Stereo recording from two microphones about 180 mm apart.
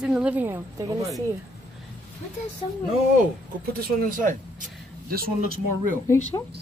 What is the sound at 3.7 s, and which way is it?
A man's voice, 50° right (ahead or behind).